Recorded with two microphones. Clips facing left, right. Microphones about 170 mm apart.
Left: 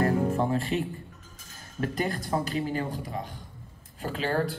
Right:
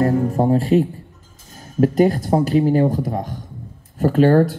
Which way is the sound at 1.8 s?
40° right (ahead or behind).